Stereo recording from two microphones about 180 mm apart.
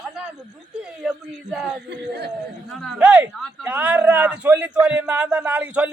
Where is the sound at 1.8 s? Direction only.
70° right (ahead or behind).